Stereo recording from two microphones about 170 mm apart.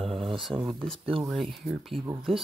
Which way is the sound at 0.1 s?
35° right (ahead or behind).